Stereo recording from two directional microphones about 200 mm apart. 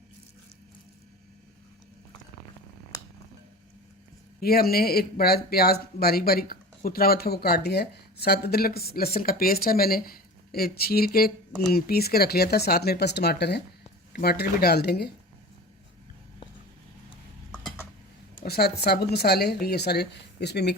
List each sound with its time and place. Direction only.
4.4 s speech: 50° left (ahead or behind)
18.4 s speech: 50° left (ahead or behind)